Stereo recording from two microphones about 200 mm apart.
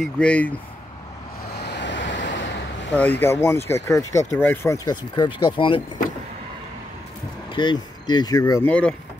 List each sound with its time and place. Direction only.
0.0 s speech: 5° left (ahead or behind)
1.6 s waves: 60° left (ahead or behind)
3.0 s speech: 10° left (ahead or behind)
7.5 s speech: 20° left (ahead or behind)
8.6 s speech: 5° left (ahead or behind)